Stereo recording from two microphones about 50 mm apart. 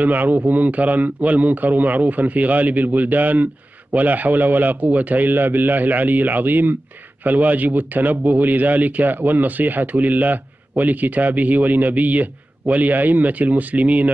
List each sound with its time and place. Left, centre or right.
0.0 s a man's voice: right